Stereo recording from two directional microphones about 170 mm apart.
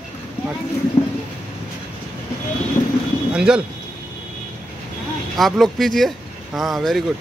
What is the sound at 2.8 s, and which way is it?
Vehicle, 40° left (ahead or behind).